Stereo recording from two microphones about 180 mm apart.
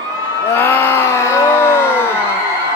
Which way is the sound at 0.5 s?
15° left (ahead or behind).